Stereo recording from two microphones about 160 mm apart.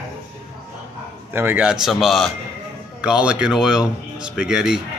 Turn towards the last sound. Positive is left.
turn(degrees=-5)  # may be behind; listen again after turning